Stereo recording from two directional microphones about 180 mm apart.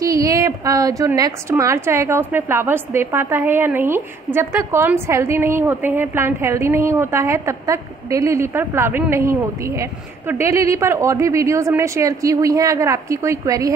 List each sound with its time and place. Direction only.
0.0 s a woman's voice: 20° right (ahead or behind)